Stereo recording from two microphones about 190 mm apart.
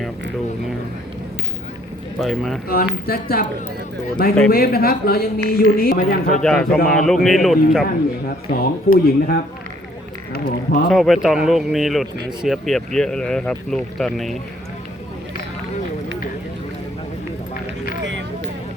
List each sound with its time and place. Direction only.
2.1 s speech: centre (ahead or behind)
2.6 s speech: 50° left (ahead or behind)
6.4 s speech: centre (ahead or behind)
8.4 s speech: 50° left (ahead or behind)
10.8 s speech: centre (ahead or behind)
18.0 s a sound: 70° right (ahead or behind)